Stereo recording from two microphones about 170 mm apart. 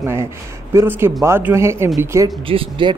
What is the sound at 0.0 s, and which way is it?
Speech, 15° right (ahead or behind).